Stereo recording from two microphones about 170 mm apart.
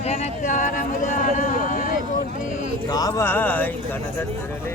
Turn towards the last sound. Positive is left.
turn(degrees=10)  # may be behind; listen again after turning